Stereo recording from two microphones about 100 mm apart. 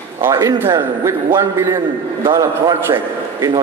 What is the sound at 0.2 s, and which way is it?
A man's voice, 35° right (ahead or behind).